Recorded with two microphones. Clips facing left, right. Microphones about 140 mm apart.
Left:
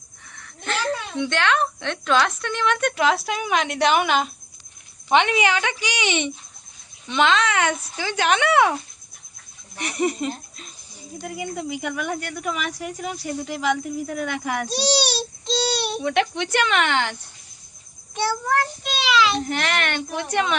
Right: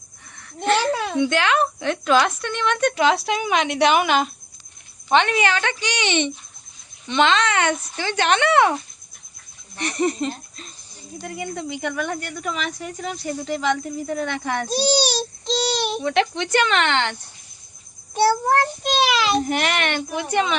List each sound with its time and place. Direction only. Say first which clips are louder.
0.3 s a sound: right 9 dB; centre (ahead or behind)
0.8 s a sound: right 4 dB; 80° right
1.2 s speech: right 1 dB; 5° right (ahead or behind)
5.0 s a woman's voice: even; 15° left (ahead or behind)
9.7 s a woman's voice: right 1 dB; 10° left (ahead or behind)
16.0 s speech: even; 5° left (ahead or behind)
18.1 s a child's voice: right 5 dB; 40° right (ahead or behind)
19.5 s speech: right 2 dB; 15° right (ahead or behind)